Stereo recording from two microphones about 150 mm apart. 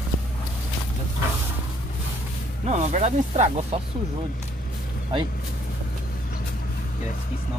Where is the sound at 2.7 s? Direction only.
50° right (ahead or behind).